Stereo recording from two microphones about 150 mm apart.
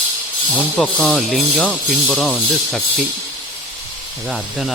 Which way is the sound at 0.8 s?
Centre (ahead or behind).